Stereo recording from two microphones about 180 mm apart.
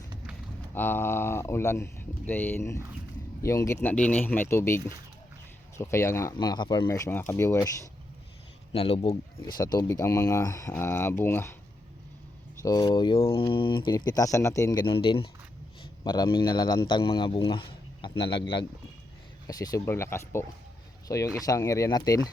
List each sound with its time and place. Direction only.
0.7 s speech: 10° left (ahead or behind)
8.7 s speech: 30° left (ahead or behind)
9.6 s speech: 20° left (ahead or behind)
12.6 s speech: 20° left (ahead or behind)